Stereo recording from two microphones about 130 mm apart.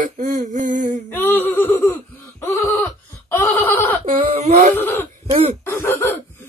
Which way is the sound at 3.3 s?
15° left (ahead or behind).